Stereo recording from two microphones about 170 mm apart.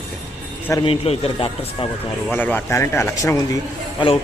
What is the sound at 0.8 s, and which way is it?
Speech, 35° left (ahead or behind).